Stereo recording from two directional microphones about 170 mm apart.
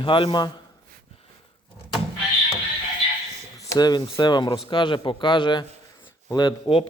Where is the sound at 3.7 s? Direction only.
25° left (ahead or behind).